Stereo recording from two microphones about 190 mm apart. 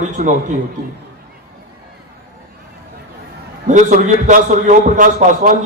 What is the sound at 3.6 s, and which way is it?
A man's voice, 40° right (ahead or behind).